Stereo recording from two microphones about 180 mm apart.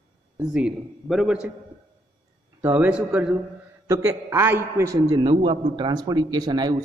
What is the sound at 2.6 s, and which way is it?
A man's voice, 10° right (ahead or behind).